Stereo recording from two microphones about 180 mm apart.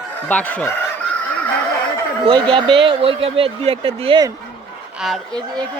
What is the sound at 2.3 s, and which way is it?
Speech, 30° right (ahead or behind).